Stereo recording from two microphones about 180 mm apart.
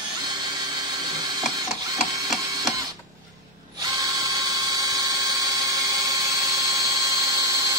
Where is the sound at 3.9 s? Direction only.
20° right (ahead or behind).